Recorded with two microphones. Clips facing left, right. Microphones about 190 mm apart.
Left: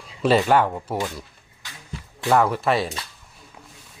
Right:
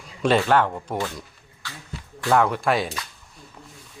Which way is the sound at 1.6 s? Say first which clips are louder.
Right 4 dB; 15° left (ahead or behind).